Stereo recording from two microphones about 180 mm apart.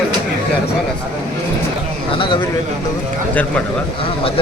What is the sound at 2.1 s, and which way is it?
Speech, 25° left (ahead or behind).